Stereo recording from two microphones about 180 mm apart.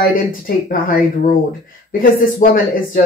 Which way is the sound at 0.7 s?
50° left (ahead or behind).